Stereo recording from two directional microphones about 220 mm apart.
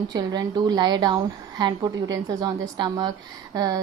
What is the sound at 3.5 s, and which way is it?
Speech, 15° right (ahead or behind).